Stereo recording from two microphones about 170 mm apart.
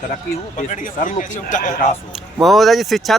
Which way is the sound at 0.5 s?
50° left (ahead or behind).